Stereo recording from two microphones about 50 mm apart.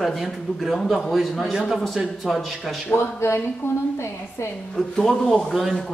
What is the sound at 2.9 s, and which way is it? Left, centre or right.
Speech, left.